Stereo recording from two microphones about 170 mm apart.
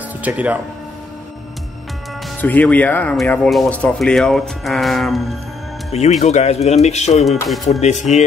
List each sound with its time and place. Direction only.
0.2 s speech: 10° right (ahead or behind)
2.4 s speech: 10° left (ahead or behind)
5.9 s speech: 40° left (ahead or behind)